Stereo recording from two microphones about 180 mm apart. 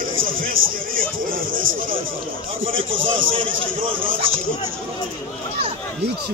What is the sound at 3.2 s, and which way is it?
Speech, 30° right (ahead or behind).